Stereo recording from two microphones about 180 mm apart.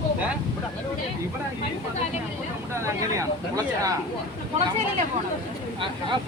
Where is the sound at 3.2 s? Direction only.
20° right (ahead or behind).